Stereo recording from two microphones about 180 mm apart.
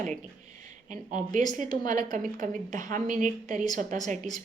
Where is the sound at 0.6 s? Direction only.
45° right (ahead or behind).